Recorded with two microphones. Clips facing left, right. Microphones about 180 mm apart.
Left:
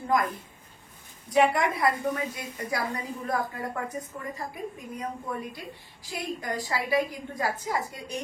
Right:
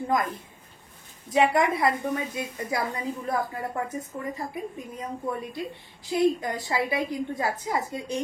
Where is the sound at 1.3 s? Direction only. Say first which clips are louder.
Right 1 dB; 20° right (ahead or behind).